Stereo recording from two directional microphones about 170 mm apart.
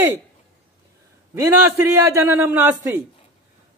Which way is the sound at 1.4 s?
10° right (ahead or behind).